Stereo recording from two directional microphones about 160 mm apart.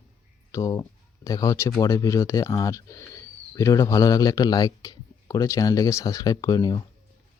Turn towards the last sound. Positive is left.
turn(degrees=25)  # may be behind; listen again after turning